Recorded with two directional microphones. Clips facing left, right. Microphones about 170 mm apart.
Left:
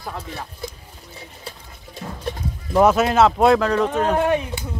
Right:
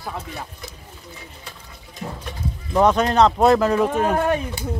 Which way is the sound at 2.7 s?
5° left (ahead or behind).